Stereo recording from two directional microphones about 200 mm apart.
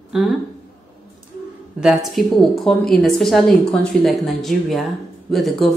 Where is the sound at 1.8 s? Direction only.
Centre (ahead or behind).